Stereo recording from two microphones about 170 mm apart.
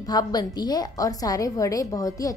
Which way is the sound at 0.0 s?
20° left (ahead or behind).